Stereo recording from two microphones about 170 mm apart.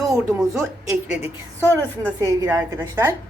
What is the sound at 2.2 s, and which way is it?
Speech, 20° right (ahead or behind).